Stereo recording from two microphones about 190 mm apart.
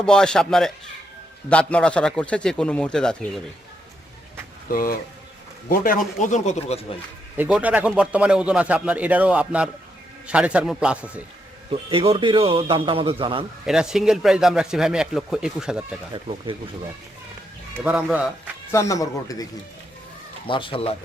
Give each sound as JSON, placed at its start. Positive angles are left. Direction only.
{"t": 0.0, "sound": "speech", "side_deg": 5}
{"t": 4.7, "sound": "a man's voice", "side_deg": 50}
{"t": 7.3, "sound": "a man's voice", "side_deg": -5}
{"t": 11.9, "sound": "a man's voice", "side_deg": -30}
{"t": 13.7, "sound": "speech", "side_deg": -5}
{"t": 16.3, "sound": "a man's voice", "side_deg": -30}
{"t": 17.7, "sound": "a man's voice", "side_deg": -10}
{"t": 18.7, "sound": "speech", "side_deg": 15}
{"t": 20.5, "sound": "speech", "side_deg": 25}